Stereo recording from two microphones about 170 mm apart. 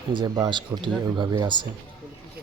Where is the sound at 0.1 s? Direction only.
25° right (ahead or behind).